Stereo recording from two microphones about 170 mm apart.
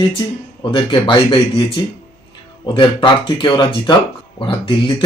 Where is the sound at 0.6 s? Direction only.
30° left (ahead or behind).